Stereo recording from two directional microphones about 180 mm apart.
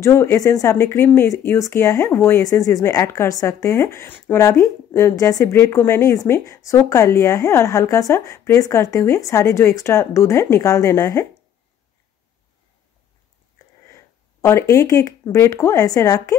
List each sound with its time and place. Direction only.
0.0 s speech: 15° left (ahead or behind)
13.9 s speech: 15° left (ahead or behind)